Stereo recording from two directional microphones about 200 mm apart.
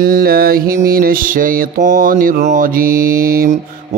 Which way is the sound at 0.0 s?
50° right (ahead or behind).